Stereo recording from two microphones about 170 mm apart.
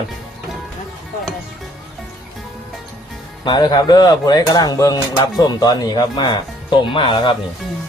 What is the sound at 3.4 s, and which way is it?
Speech, 25° left (ahead or behind).